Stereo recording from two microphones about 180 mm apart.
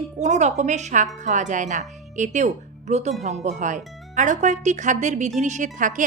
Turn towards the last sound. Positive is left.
turn(degrees=-45)  # may be behind; listen again after turning